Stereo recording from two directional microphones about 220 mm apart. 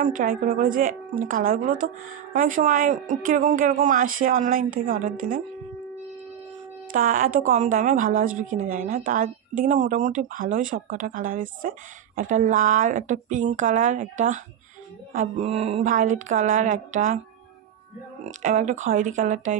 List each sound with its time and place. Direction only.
0.0 s speech: 35° right (ahead or behind)
6.9 s speech: 40° right (ahead or behind)
18.2 s speech: 35° right (ahead or behind)